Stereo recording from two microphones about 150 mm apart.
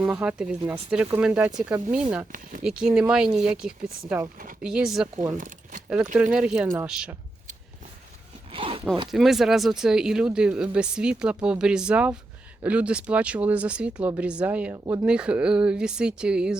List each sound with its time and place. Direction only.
0.0 s speech: 5° right (ahead or behind)
5.4 s speech: 60° right (ahead or behind)
6.3 s speech: 5° right (ahead or behind)
8.5 s zipper: 40° right (ahead or behind)
9.0 s speech: centre (ahead or behind)